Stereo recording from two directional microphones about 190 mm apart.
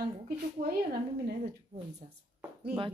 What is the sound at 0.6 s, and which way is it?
Speech, 50° right (ahead or behind).